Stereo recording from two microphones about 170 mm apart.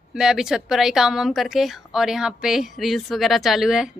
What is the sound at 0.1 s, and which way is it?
A woman's voice, 5° right (ahead or behind).